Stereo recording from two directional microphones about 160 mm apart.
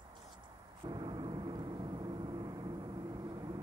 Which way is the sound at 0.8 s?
25° right (ahead or behind).